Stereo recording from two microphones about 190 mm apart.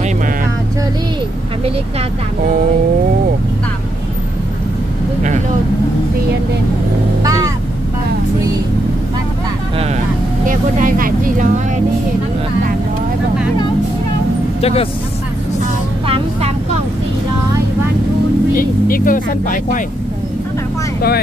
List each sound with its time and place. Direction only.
7.2 s vehicle: 20° right (ahead or behind)
10.4 s vehicle: 45° right (ahead or behind)
14.6 s speech: 30° left (ahead or behind)
16.1 s vehicle: 30° right (ahead or behind)
18.5 s vehicle: 50° left (ahead or behind)